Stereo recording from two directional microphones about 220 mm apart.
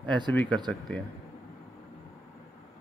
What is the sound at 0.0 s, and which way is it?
Speech, 20° right (ahead or behind).